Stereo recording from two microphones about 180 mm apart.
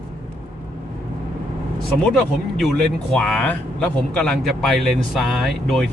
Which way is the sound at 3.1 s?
5° left (ahead or behind).